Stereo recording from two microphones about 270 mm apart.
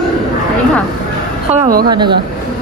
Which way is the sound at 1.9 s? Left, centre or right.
Centre.